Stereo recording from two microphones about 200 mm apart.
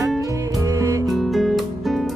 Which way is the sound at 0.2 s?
15° right (ahead or behind).